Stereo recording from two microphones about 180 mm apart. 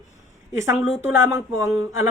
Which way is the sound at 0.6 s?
15° right (ahead or behind).